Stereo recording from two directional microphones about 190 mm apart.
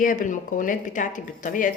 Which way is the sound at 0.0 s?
45° left (ahead or behind).